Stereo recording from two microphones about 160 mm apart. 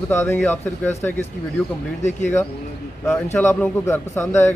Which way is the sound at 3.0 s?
15° left (ahead or behind).